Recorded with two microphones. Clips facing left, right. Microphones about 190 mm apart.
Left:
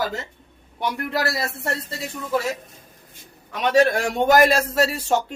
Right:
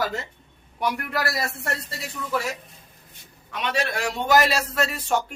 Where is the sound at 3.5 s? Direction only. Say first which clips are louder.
Left 9 dB; 45° left (ahead or behind).